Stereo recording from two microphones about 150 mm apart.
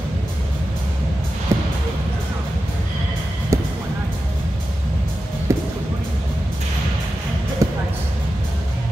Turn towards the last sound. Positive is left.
turn(degrees=-20)  # may be behind; listen again after turning